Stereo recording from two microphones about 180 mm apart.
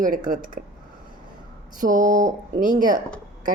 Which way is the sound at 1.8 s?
45° right (ahead or behind).